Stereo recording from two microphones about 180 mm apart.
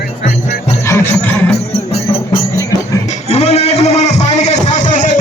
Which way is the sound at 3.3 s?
35° left (ahead or behind).